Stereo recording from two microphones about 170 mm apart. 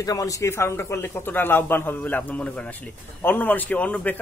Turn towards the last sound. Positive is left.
turn(degrees=5)  # may be behind; listen again after turning